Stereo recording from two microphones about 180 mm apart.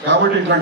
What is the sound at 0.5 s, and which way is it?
Speech, 80° right.